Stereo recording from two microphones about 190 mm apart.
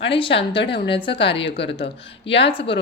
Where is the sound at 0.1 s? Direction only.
30° left (ahead or behind).